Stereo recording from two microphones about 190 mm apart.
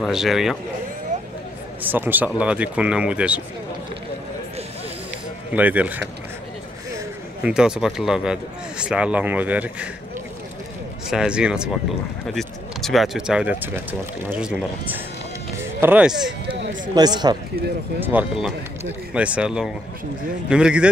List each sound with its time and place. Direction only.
0.0 s speech: centre (ahead or behind)
1.8 s speech: 10° right (ahead or behind)
5.5 s speech: 10° right (ahead or behind)
7.4 s speech: 5° right (ahead or behind)
11.1 s speech: 5° right (ahead or behind)
16.9 s speech: 20° right (ahead or behind)
18.0 s speech: 5° right (ahead or behind)